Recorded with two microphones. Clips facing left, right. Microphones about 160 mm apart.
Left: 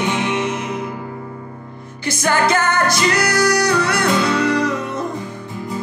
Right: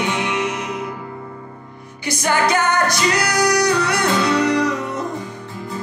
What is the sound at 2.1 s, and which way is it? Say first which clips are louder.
Music: left 1 dB; 15° right (ahead or behind).